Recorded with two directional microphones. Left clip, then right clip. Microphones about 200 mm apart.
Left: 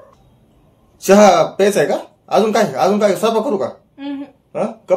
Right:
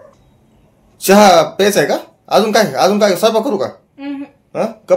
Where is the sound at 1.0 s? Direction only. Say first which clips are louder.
Right 2 dB; 25° right (ahead or behind).